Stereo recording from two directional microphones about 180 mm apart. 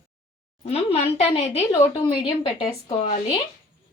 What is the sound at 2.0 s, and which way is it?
Speech, 30° left (ahead or behind).